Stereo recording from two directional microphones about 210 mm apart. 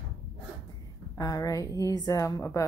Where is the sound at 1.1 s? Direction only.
15° left (ahead or behind).